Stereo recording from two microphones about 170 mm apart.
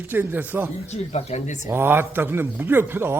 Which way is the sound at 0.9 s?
40° left (ahead or behind).